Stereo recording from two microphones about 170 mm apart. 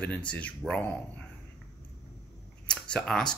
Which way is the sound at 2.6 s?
5° left (ahead or behind).